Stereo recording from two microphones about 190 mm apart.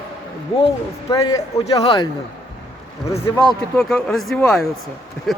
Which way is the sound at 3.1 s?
20° left (ahead or behind).